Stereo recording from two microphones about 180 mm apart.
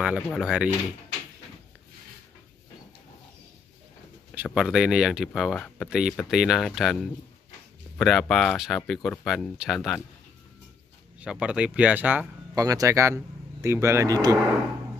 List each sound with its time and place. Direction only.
0.0 s speech: centre (ahead or behind)
4.4 s speech: 5° right (ahead or behind)
11.1 s speech: 5° right (ahead or behind)